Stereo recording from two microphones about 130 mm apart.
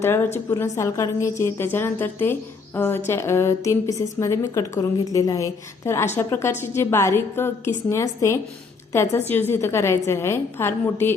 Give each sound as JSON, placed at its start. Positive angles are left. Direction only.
{"t": 0.0, "sound": "a woman's voice", "side_deg": 20}